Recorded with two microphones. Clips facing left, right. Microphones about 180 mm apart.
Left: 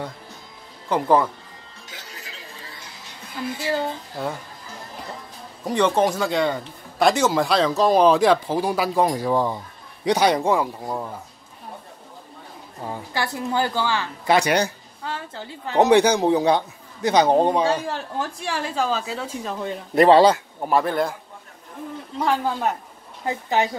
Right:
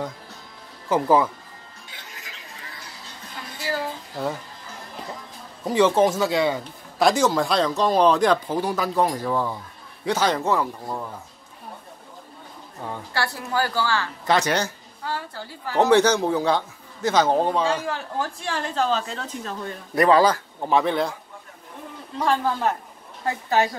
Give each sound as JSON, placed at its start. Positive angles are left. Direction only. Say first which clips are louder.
{"t": 0.8, "sound": "speech", "louder": "even", "side_deg": -5}
{"t": 1.9, "sound": "a sound", "louder": "left 4 dB", "side_deg": 40}
{"t": 3.5, "sound": "a woman's voice", "louder": "left 3 dB", "side_deg": 25}
{"t": 5.7, "sound": "speech", "louder": "right 1 dB", "side_deg": -5}
{"t": 12.8, "sound": "speech", "louder": "left 1 dB", "side_deg": 10}
{"t": 13.2, "sound": "a woman's voice", "louder": "left 2 dB", "side_deg": 20}
{"t": 20.0, "sound": "a woman's voice", "louder": "left 4 dB", "side_deg": 25}
{"t": 20.6, "sound": "speech", "louder": "even", "side_deg": 5}
{"t": 22.2, "sound": "speech", "louder": "even", "side_deg": 10}